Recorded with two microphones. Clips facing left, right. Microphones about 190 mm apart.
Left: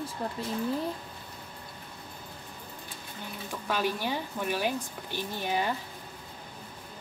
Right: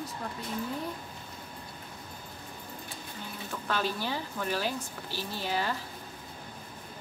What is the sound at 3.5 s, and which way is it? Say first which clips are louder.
Speech: left 2 dB; 15° left (ahead or behind).